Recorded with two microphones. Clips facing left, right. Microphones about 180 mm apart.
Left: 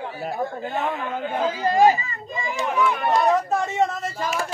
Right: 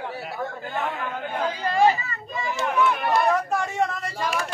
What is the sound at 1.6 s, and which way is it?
Speech, 40° left (ahead or behind).